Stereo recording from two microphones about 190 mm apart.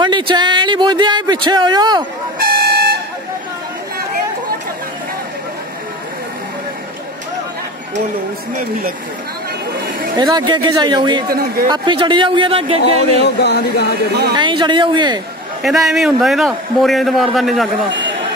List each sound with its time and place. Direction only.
0.0 s a sound: 25° right (ahead or behind)
2.5 s vehicle: 55° right (ahead or behind)
10.1 s speech: 20° right (ahead or behind)
11.2 s speech: 50° right (ahead or behind)
11.7 s speech: 25° right (ahead or behind)
13.2 s speech: 60° left (ahead or behind)
14.3 s speech: 25° right (ahead or behind)
15.6 s a man's voice: centre (ahead or behind)